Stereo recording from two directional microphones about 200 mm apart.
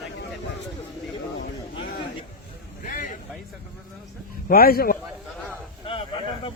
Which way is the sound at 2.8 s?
40° left (ahead or behind).